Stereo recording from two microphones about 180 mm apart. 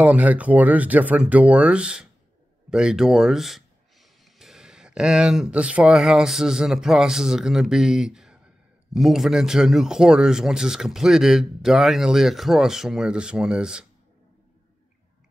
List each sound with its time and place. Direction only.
0.0 s speech: 10° right (ahead or behind)